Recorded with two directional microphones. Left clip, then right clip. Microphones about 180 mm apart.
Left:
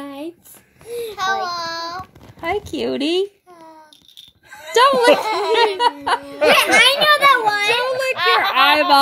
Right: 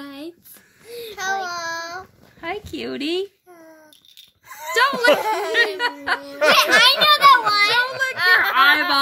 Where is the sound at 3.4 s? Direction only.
15° right (ahead or behind).